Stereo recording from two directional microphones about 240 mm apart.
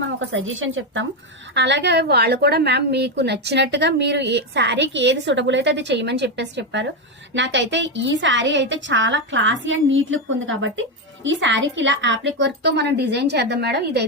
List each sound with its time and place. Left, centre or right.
0.3 s a woman's voice: right